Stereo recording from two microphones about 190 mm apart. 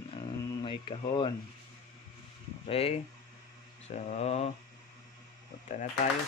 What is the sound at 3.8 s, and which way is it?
Speech, 35° left (ahead or behind).